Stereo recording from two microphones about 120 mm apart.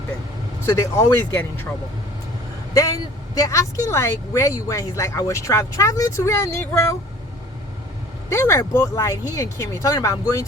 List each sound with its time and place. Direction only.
0.6 s speech: 25° left (ahead or behind)
2.7 s speech: 30° left (ahead or behind)
8.3 s speech: 25° left (ahead or behind)